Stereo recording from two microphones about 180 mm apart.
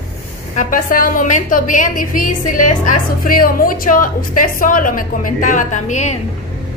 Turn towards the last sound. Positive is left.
turn(degrees=40)  # may be behind; listen again after turning